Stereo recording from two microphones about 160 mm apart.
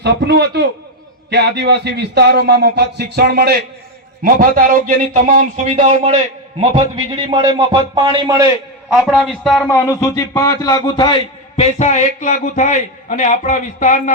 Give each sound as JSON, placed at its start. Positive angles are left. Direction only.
{"t": 0.0, "sound": "a man's voice", "side_deg": -90}
{"t": 4.2, "sound": "a man's voice", "side_deg": -60}
{"t": 9.1, "sound": "a man's voice", "side_deg": 5}
{"t": 9.6, "sound": "a man's voice", "side_deg": 15}